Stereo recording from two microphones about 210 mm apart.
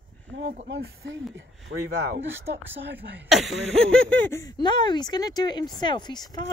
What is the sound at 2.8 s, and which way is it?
Speech, 55° right (ahead or behind).